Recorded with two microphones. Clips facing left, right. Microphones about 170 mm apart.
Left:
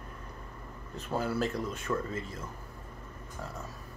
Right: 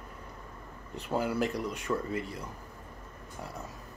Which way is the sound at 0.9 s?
15° right (ahead or behind).